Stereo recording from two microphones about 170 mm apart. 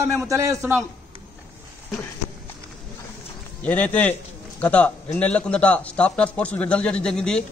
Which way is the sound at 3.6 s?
10° left (ahead or behind).